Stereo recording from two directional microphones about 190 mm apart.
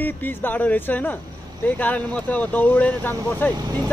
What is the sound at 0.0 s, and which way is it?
Speech, 10° left (ahead or behind).